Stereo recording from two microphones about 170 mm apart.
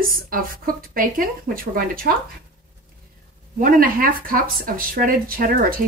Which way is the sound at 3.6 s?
55° right (ahead or behind).